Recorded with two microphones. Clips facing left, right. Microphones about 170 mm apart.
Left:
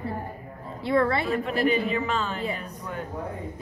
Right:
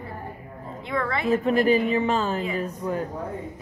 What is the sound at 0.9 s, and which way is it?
Speech, 35° left (ahead or behind).